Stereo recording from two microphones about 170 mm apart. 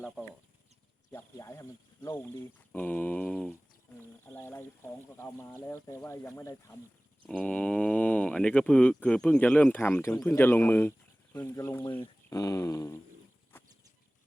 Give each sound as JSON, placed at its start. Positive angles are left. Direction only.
{"t": 1.1, "sound": "speech", "side_deg": 15}
{"t": 7.3, "sound": "speech", "side_deg": 5}